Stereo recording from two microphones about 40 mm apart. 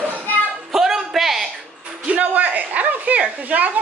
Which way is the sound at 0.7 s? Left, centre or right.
Centre.